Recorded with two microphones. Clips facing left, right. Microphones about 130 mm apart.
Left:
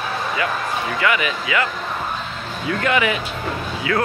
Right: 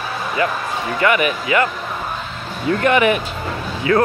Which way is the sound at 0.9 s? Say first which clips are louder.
Right 6 dB; 40° right (ahead or behind).